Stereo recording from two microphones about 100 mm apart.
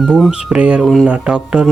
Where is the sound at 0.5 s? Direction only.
10° right (ahead or behind).